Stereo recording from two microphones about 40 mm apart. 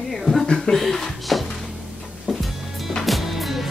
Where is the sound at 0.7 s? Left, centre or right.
Centre.